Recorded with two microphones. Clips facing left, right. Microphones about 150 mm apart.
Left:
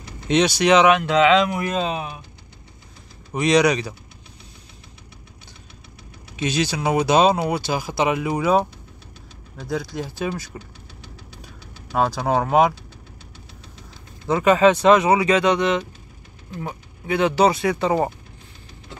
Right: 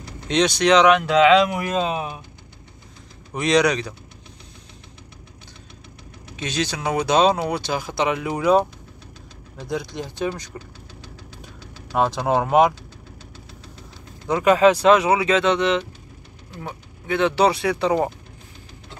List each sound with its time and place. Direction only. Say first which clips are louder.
0.3 s speech: left 1 dB; 5° left (ahead or behind)
3.3 s speech: left 1 dB; centre (ahead or behind)
6.4 s speech: left 3 dB; 10° left (ahead or behind)
12.2 s speech: right 1 dB; centre (ahead or behind)
14.4 s speech: even; 10° right (ahead or behind)
15.2 s speech: left 1 dB; 10° left (ahead or behind)